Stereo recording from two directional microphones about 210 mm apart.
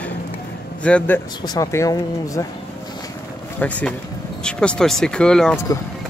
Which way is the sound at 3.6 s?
5° left (ahead or behind).